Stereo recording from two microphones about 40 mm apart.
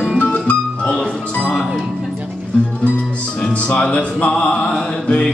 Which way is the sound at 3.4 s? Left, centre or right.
Left.